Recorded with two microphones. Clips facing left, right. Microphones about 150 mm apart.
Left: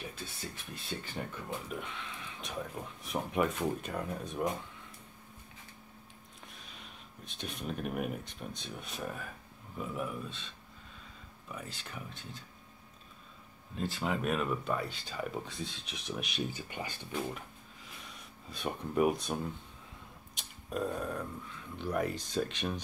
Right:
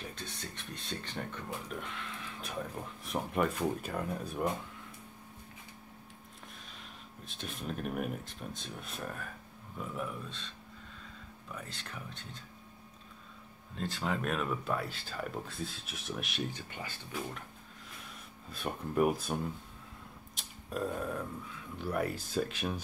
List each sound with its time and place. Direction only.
0.0 s speech: 5° left (ahead or behind)
6.5 s speech: centre (ahead or behind)
11.5 s speech: centre (ahead or behind)
13.7 s speech: centre (ahead or behind)
16.7 s speech: 15° left (ahead or behind)
17.8 s a sound: centre (ahead or behind)
20.3 s speech: centre (ahead or behind)